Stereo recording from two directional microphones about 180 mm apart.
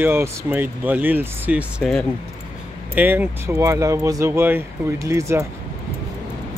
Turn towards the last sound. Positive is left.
turn(degrees=-15)  # may be behind; listen again after turning